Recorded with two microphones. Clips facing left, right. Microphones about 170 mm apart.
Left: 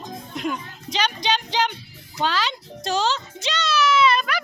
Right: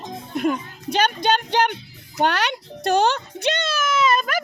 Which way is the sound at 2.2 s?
65° right (ahead or behind).